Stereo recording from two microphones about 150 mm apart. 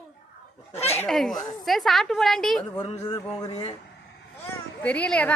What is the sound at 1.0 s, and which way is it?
A woman's voice, centre (ahead or behind).